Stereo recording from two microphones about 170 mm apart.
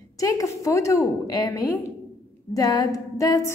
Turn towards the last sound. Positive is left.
turn(degrees=20)  # may be behind; listen again after turning